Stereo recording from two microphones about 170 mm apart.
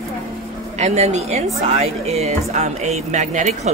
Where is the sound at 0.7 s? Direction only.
40° right (ahead or behind).